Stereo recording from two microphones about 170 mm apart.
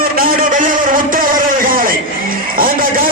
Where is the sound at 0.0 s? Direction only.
55° right (ahead or behind).